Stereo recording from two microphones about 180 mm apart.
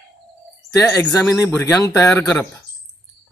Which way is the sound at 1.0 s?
15° left (ahead or behind).